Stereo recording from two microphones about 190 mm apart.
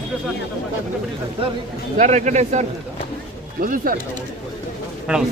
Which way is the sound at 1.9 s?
40° right (ahead or behind).